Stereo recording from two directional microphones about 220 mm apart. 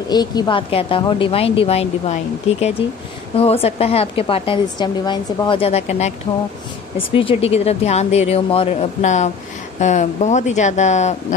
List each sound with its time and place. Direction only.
0.1 s a woman's voice: 20° left (ahead or behind)
3.3 s a woman's voice: 25° left (ahead or behind)